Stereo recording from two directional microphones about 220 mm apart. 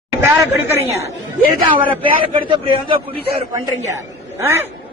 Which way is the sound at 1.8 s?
20° right (ahead or behind).